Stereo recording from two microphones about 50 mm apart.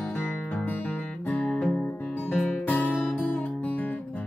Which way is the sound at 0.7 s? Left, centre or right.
Left.